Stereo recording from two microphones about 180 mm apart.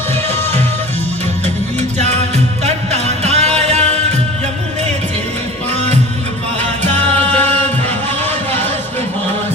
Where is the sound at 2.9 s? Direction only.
40° right (ahead or behind).